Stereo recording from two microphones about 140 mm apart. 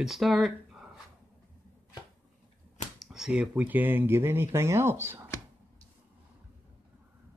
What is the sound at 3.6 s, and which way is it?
Speech, 15° right (ahead or behind).